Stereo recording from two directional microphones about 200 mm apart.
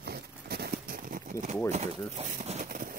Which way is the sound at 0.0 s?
55° right (ahead or behind).